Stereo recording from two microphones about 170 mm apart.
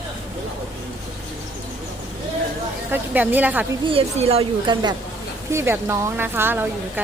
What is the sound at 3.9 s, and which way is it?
A woman's voice, 35° right (ahead or behind).